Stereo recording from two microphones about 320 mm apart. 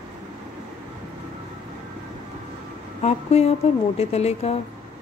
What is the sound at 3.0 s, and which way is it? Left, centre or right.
Speech, centre.